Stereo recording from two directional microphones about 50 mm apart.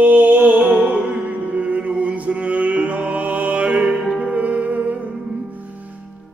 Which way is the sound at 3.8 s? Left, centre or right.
Centre.